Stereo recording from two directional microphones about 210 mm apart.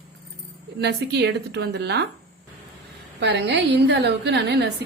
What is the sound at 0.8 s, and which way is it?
Speech, 50° right (ahead or behind).